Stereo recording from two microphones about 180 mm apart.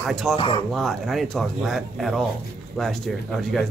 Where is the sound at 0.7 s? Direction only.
Centre (ahead or behind).